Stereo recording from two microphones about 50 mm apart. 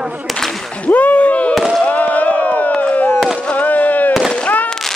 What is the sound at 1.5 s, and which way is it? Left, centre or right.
Speech, centre.